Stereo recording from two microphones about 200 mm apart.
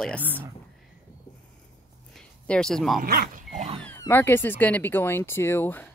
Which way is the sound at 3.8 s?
10° left (ahead or behind).